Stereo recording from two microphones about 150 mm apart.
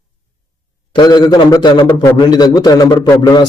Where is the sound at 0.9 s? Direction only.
30° left (ahead or behind).